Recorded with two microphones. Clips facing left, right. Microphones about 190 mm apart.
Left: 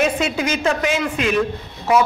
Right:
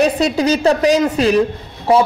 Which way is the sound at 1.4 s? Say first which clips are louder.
Right 4 dB; 30° right (ahead or behind).